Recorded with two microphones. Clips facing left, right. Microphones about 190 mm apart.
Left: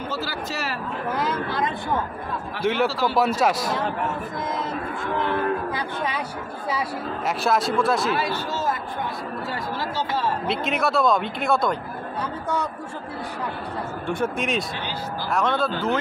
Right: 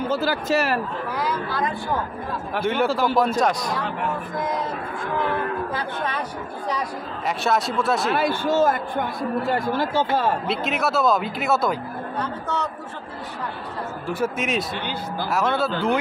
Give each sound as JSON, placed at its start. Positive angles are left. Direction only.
{"t": 0.1, "sound": "speech", "side_deg": -50}
{"t": 1.2, "sound": "speech", "side_deg": 25}
{"t": 2.6, "sound": "speech", "side_deg": 0}
{"t": 2.9, "sound": "speech", "side_deg": -50}
{"t": 3.3, "sound": "speech", "side_deg": 5}
{"t": 5.7, "sound": "speech", "side_deg": 10}
{"t": 8.1, "sound": "speech", "side_deg": -50}
{"t": 10.4, "sound": "speech", "side_deg": 0}
{"t": 12.2, "sound": "speech", "side_deg": 10}
{"t": 14.0, "sound": "speech", "side_deg": -5}